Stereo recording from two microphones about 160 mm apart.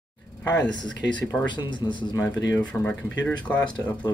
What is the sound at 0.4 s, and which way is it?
Speech, 10° left (ahead or behind).